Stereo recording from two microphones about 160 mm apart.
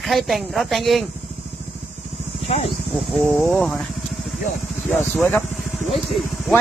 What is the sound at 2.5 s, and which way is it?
Speech, 40° left (ahead or behind).